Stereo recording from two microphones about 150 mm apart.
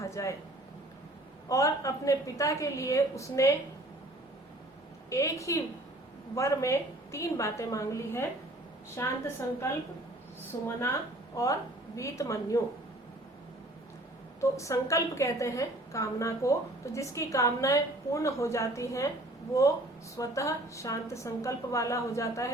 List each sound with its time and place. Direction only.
0.0 s speech: 20° left (ahead or behind)
1.5 s a woman's voice: 20° left (ahead or behind)
5.0 s a woman's voice: 20° left (ahead or behind)
11.4 s a woman's voice: 20° left (ahead or behind)
14.5 s a woman's voice: 20° left (ahead or behind)
20.1 s a woman's voice: 20° left (ahead or behind)